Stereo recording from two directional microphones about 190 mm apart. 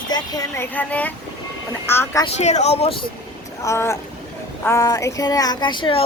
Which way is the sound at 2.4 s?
35° left (ahead or behind).